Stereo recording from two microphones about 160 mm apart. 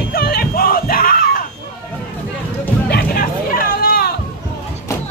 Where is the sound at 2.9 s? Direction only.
65° left (ahead or behind).